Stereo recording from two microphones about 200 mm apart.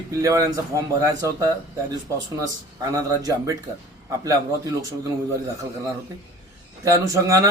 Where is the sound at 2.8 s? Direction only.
15° right (ahead or behind).